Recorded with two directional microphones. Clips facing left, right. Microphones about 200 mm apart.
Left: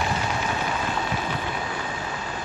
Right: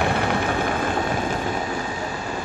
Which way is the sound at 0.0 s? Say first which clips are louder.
Right 5 dB; 60° right (ahead or behind).